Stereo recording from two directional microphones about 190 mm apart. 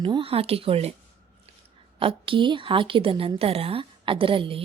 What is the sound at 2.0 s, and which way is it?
A woman's voice, 30° right (ahead or behind).